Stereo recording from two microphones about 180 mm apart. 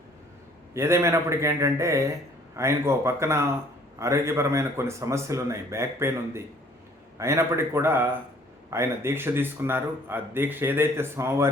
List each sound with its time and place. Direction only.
0.7 s speech: 15° right (ahead or behind)